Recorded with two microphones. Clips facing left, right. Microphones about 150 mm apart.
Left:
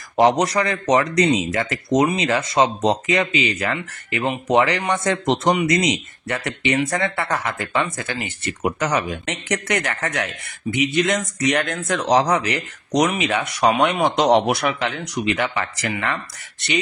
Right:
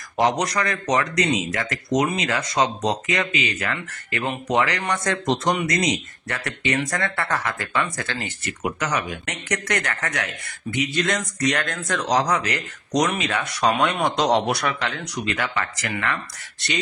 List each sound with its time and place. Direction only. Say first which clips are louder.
0.2 s speech: left 5 dB; 30° left (ahead or behind)
3.7 s speech: left 3 dB; 20° left (ahead or behind)
5.5 s speech: left 7 dB; 10° left (ahead or behind)
5.8 s speech: left 2 dB; 25° left (ahead or behind)
8.6 s speech: left 4 dB; 35° left (ahead or behind)